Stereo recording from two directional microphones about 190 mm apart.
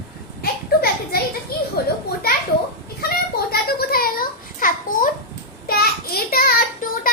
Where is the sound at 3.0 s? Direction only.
55° left (ahead or behind).